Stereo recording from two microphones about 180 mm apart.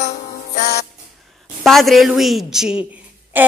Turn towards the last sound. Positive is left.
turn(degrees=-10)  # may be behind; listen again after turning